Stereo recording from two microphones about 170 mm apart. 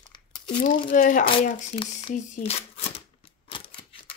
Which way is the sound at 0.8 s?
50° left (ahead or behind).